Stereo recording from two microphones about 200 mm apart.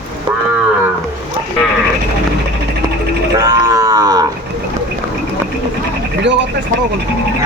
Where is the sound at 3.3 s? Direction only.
20° right (ahead or behind).